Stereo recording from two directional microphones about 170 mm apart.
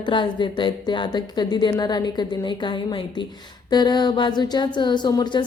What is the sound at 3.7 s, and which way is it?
A woman's voice, 25° left (ahead or behind).